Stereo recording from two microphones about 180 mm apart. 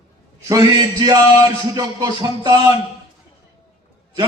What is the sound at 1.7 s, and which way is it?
Speech, 20° right (ahead or behind).